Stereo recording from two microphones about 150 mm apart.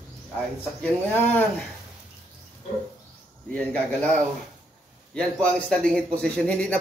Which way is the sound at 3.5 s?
10° left (ahead or behind).